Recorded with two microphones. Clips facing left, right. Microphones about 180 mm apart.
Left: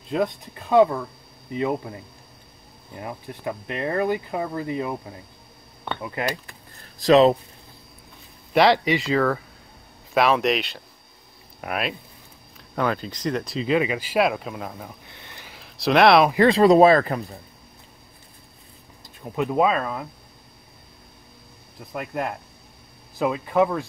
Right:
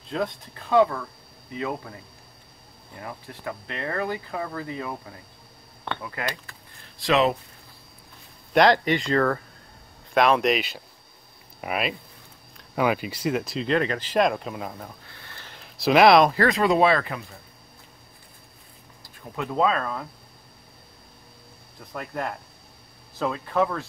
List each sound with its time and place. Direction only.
0.1 s a man's voice: 15° left (ahead or behind)
3.0 s speech: 20° left (ahead or behind)
7.0 s speech: 35° left (ahead or behind)
8.5 s speech: centre (ahead or behind)
15.0 s a sound: 20° left (ahead or behind)
15.5 s a sound: centre (ahead or behind)
16.4 s speech: 35° left (ahead or behind)
19.0 s speech: 20° left (ahead or behind)
21.9 s speech: 10° left (ahead or behind)